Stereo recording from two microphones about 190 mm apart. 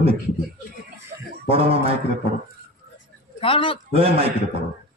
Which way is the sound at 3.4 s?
30° left (ahead or behind).